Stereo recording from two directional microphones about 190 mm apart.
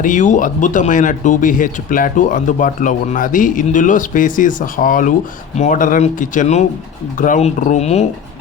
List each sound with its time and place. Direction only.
0.0 s speech: 40° left (ahead or behind)